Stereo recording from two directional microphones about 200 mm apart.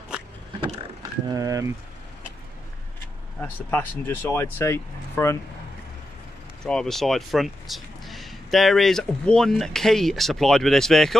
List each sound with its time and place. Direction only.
1.3 s speech: 15° right (ahead or behind)
3.3 s speech: 10° left (ahead or behind)
6.6 s speech: 5° left (ahead or behind)